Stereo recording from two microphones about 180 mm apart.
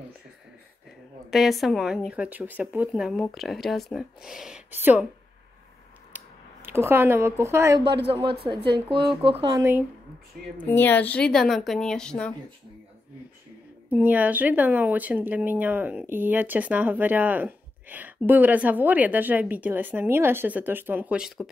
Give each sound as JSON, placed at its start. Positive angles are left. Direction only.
{"t": 1.3, "sound": "speech", "side_deg": 0}
{"t": 6.1, "sound": "speech", "side_deg": -10}
{"t": 7.8, "sound": "speech", "side_deg": -70}
{"t": 8.9, "sound": "speech", "side_deg": -30}
{"t": 9.6, "sound": "speech", "side_deg": -10}
{"t": 10.6, "sound": "speech", "side_deg": 10}
{"t": 13.8, "sound": "speech", "side_deg": -10}